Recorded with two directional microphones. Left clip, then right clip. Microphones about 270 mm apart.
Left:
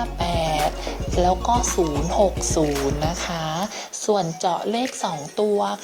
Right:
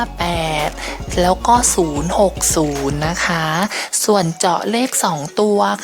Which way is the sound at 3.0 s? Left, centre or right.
Right.